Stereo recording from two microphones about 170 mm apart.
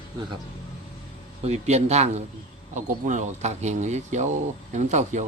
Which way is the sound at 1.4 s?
40° right (ahead or behind).